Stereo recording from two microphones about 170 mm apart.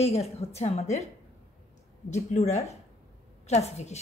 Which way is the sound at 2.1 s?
40° left (ahead or behind).